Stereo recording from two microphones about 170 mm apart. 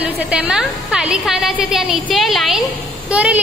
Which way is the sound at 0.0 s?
5° right (ahead or behind).